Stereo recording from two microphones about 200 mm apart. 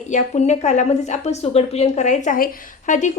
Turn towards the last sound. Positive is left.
turn(degrees=40)  # may be behind; listen again after turning